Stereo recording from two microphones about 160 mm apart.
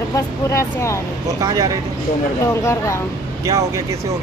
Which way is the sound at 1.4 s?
20° right (ahead or behind).